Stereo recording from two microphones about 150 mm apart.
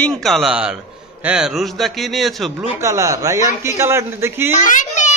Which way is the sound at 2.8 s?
20° right (ahead or behind).